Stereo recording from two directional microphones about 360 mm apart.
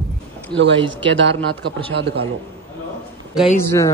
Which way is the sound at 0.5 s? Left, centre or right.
Right.